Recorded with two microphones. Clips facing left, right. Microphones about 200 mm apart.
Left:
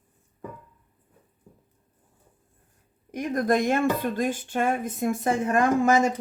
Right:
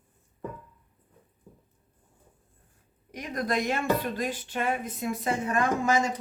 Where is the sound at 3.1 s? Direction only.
50° left (ahead or behind).